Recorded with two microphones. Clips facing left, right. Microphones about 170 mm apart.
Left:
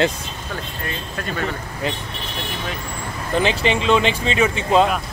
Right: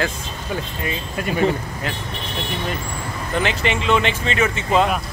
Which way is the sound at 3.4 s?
20° left (ahead or behind).